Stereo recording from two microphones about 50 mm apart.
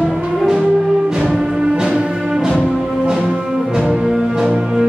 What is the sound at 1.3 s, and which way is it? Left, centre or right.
Music, centre.